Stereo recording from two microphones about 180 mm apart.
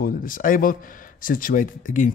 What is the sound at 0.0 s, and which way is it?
Speech, 50° left (ahead or behind).